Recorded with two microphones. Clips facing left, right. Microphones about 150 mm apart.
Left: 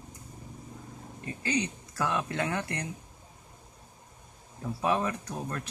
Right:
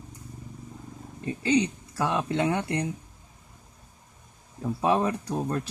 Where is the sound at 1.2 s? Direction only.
25° right (ahead or behind).